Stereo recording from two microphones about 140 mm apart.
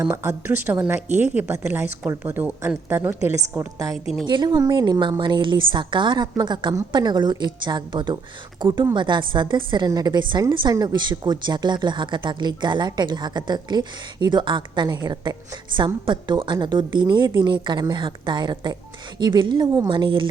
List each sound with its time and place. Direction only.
0.1 s a woman's voice: 15° right (ahead or behind)
4.3 s a woman's voice: 30° right (ahead or behind)